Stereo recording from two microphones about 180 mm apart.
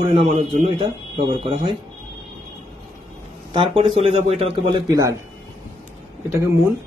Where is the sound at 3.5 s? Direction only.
30° right (ahead or behind).